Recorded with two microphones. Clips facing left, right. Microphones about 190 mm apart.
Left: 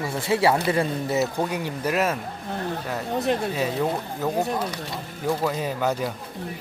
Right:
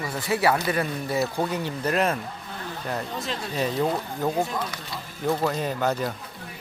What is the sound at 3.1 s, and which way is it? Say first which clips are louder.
Speech: left 8 dB; 55° left (ahead or behind).